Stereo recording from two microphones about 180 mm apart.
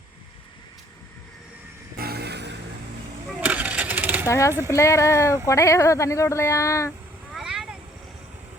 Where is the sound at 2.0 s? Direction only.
60° right (ahead or behind).